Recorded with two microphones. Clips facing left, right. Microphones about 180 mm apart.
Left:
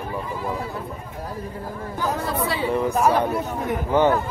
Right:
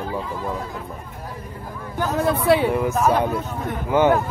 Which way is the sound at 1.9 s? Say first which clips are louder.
Right 4 dB; 60° right (ahead or behind).